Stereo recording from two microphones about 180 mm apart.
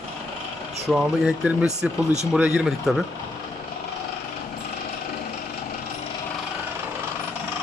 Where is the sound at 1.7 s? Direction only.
40° right (ahead or behind).